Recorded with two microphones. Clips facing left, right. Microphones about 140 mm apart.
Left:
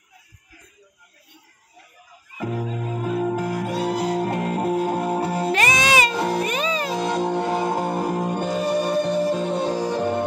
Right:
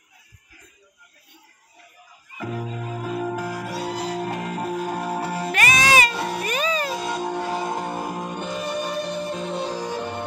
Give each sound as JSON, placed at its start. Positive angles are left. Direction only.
{"t": 2.3, "sound": "music", "side_deg": 15}
{"t": 3.5, "sound": "music", "side_deg": 55}
{"t": 4.1, "sound": "music", "side_deg": 25}
{"t": 9.8, "sound": "music", "side_deg": 25}